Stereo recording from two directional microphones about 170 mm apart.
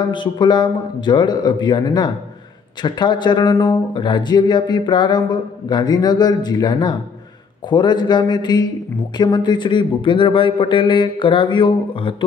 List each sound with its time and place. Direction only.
0.1 s speech: 25° left (ahead or behind)